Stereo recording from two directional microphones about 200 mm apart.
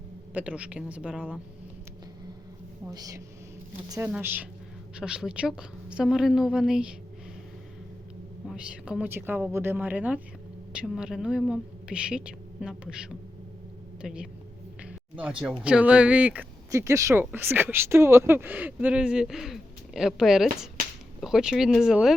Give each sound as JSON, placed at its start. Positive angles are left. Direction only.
{"t": 0.3, "sound": "speech", "side_deg": -5}
{"t": 2.9, "sound": "a woman's voice", "side_deg": -20}
{"t": 8.4, "sound": "a woman's voice", "side_deg": -5}